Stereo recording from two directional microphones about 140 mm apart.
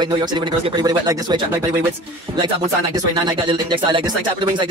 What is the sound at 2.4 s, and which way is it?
Speech, 30° right (ahead or behind).